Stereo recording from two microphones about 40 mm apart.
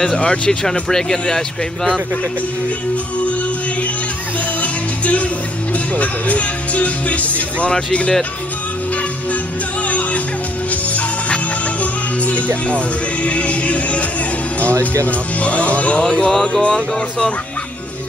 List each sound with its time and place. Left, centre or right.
0.2 s music: left
0.7 s speech: centre
4.6 s music: left
5.9 s speech: left
9.8 s music: left
12.6 s speech: left
16.0 s music: centre
16.3 s speech: centre
16.6 s music: centre